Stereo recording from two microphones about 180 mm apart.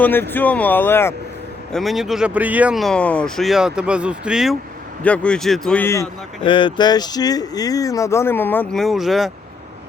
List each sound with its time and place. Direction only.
0.0 s speech: 10° left (ahead or behind)
1.7 s speech: centre (ahead or behind)
5.0 s speech: 5° left (ahead or behind)
6.4 s speech: 25° left (ahead or behind); by 9.3 s centre (ahead or behind)